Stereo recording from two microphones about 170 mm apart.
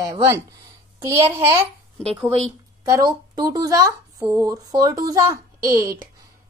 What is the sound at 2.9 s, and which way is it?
A woman's voice, 25° right (ahead or behind).